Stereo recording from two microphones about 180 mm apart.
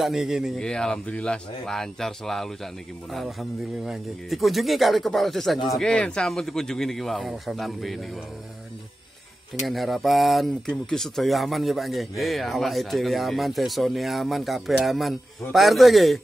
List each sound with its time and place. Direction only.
0.0 s speech: centre (ahead or behind)
9.7 s speech: centre (ahead or behind)